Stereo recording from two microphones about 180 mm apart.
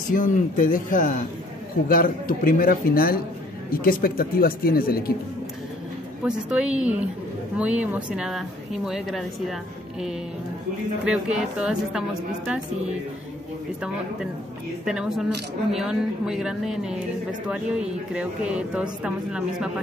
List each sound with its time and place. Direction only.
0.1 s speech: 50° left (ahead or behind)
6.2 s a woman's voice: 5° right (ahead or behind)
14.9 s speech: 5° right (ahead or behind)